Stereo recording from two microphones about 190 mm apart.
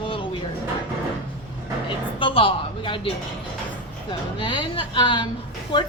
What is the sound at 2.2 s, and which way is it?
Speech, 25° left (ahead or behind).